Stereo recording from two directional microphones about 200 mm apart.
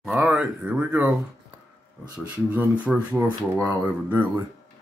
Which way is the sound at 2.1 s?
5° right (ahead or behind).